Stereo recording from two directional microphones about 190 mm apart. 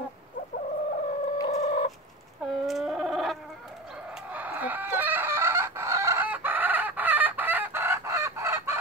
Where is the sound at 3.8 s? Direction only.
5° right (ahead or behind).